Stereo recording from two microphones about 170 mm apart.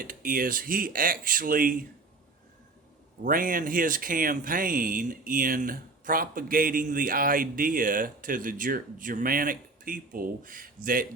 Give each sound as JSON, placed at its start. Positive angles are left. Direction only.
{"t": 0.0, "sound": "speech", "side_deg": -55}
{"t": 3.2, "sound": "speech", "side_deg": -55}